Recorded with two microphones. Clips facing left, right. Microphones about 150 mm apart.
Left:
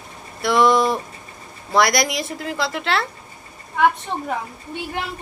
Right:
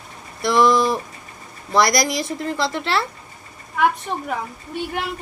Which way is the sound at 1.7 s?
Centre (ahead or behind).